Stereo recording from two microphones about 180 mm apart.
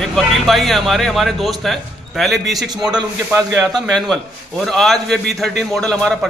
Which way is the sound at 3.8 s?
Centre (ahead or behind).